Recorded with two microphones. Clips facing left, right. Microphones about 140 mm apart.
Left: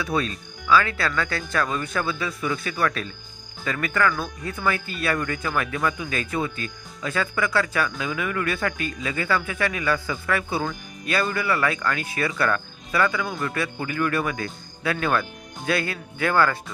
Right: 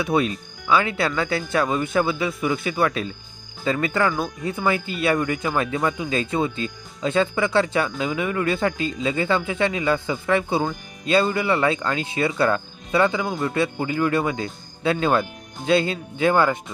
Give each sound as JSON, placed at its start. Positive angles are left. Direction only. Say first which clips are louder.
{"t": 0.0, "sound": "speech", "louder": "right 4 dB", "side_deg": -20}